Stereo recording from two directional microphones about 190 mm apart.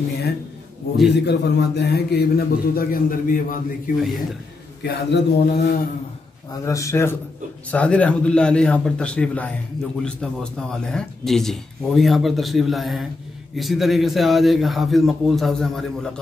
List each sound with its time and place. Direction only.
1.1 s a man's voice: 60° left (ahead or behind); by 3.9 s 45° left (ahead or behind)
4.0 s a man's voice: centre (ahead or behind)
4.8 s a man's voice: 60° left (ahead or behind)
6.6 s a man's voice: 15° left (ahead or behind)